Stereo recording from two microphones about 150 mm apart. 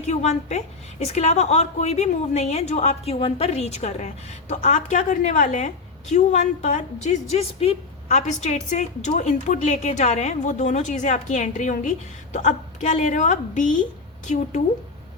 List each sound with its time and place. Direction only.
0.1 s a woman's voice: 50° left (ahead or behind)